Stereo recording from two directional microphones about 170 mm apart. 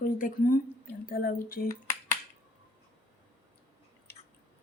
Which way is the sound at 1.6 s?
15° left (ahead or behind).